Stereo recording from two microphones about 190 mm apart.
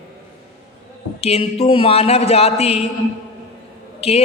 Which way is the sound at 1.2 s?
35° left (ahead or behind).